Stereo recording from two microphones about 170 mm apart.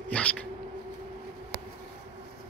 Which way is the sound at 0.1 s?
5° left (ahead or behind).